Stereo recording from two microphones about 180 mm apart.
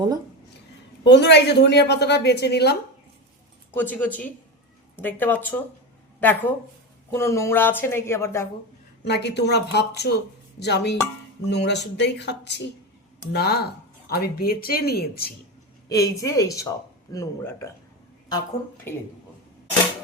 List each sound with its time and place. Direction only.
1.0 s a woman's voice: 75° left (ahead or behind)
3.8 s speech: 10° left (ahead or behind)
9.0 s a woman's voice: 70° left (ahead or behind)
15.9 s a woman's voice: 20° left (ahead or behind)
18.9 s speech: 10° left (ahead or behind)